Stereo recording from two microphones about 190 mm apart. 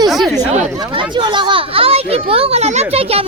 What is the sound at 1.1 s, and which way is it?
Children playing, 25° right (ahead or behind).